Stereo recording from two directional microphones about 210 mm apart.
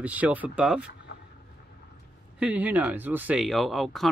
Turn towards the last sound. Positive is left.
turn(degrees=0)  # may be behind; listen again after turning